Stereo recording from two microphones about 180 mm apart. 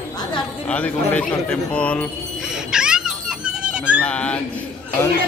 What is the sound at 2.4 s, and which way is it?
Music, 5° right (ahead or behind).